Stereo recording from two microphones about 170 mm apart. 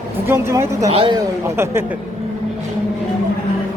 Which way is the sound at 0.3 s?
15° right (ahead or behind).